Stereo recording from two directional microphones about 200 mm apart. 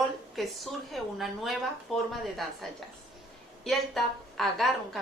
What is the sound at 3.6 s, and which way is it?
A woman's voice, centre (ahead or behind).